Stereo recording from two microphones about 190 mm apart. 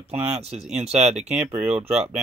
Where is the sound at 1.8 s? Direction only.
35° right (ahead or behind).